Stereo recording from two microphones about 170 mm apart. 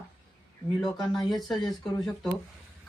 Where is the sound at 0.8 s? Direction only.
25° left (ahead or behind).